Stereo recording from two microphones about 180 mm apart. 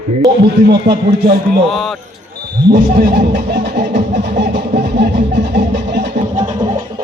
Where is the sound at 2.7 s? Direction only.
60° right (ahead or behind).